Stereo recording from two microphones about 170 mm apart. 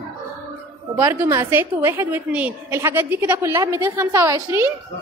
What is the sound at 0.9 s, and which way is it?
A woman's voice, 15° right (ahead or behind).